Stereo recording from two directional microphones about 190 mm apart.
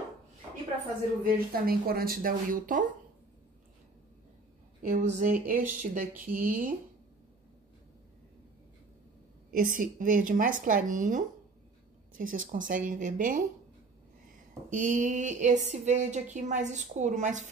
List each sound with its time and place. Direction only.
1.2 s speech: 50° right (ahead or behind)
4.8 s speech: 40° right (ahead or behind)
9.5 s speech: 45° right (ahead or behind)
14.7 s a woman's voice: 40° right (ahead or behind)